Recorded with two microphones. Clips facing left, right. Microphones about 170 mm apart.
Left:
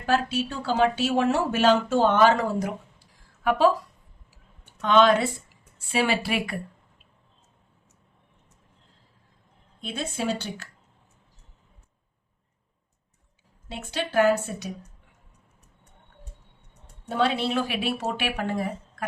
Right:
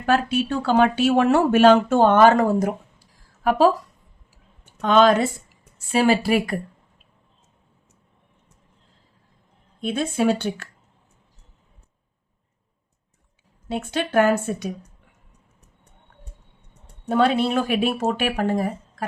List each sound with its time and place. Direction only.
0.0 s speech: 60° right (ahead or behind)
4.6 s a woman's voice: 40° right (ahead or behind)
9.8 s speech: 55° right (ahead or behind)
13.7 s speech: 55° right (ahead or behind)
17.1 s speech: 50° right (ahead or behind)